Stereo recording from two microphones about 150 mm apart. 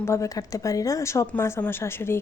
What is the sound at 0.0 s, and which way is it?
A woman's voice, 20° left (ahead or behind).